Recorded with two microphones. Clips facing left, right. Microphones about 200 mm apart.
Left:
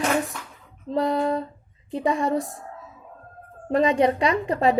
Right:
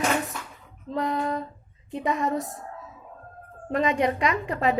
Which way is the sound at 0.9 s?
35° left (ahead or behind).